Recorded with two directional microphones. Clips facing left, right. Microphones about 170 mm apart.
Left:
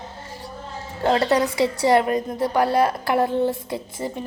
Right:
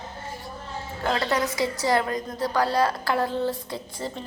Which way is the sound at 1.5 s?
65° left (ahead or behind).